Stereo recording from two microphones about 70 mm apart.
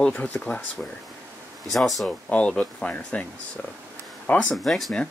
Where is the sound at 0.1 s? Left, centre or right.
Left.